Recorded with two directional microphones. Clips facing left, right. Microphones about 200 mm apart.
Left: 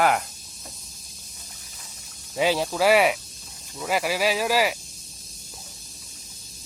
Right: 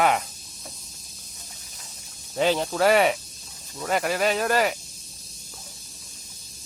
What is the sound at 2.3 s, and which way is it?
Speech, 5° left (ahead or behind).